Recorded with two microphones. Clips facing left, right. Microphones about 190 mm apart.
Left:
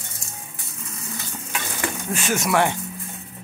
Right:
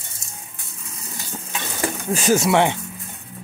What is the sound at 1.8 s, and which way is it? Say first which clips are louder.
Speech: right 5 dB; 35° right (ahead or behind).